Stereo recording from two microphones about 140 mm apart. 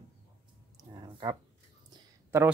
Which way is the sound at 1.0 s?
30° right (ahead or behind).